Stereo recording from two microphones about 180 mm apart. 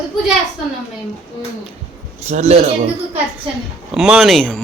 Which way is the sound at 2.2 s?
40° right (ahead or behind).